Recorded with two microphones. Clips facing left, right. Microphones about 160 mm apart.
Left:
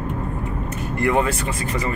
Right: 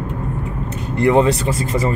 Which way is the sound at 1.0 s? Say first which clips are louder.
Right 6 dB; 25° right (ahead or behind).